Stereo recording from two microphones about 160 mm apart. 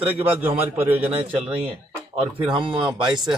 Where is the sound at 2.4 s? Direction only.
30° right (ahead or behind).